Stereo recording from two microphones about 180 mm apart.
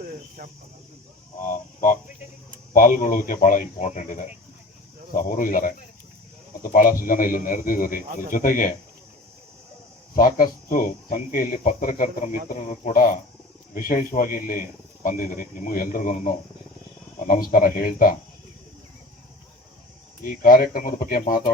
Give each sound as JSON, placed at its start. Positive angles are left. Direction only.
{"t": 0.0, "sound": "cricket", "side_deg": -50}
{"t": 1.4, "sound": "speech", "side_deg": 45}
{"t": 10.2, "sound": "speech", "side_deg": 50}
{"t": 20.2, "sound": "speech", "side_deg": 50}